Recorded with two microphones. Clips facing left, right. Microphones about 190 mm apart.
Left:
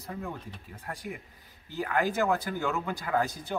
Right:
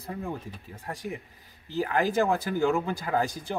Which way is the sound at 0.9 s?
25° right (ahead or behind).